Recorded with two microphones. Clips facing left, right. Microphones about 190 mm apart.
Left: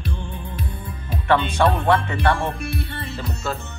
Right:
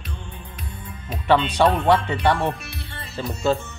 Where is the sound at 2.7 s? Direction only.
55° left (ahead or behind).